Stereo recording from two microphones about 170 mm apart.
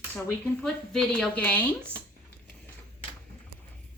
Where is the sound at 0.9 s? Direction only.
5° left (ahead or behind).